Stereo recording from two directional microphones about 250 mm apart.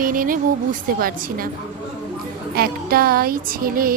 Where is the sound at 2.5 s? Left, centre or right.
Right.